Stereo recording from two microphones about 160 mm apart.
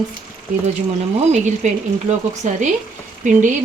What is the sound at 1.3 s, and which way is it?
Speech, 45° right (ahead or behind).